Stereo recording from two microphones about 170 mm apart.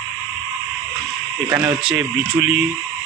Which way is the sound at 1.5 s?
10° right (ahead or behind).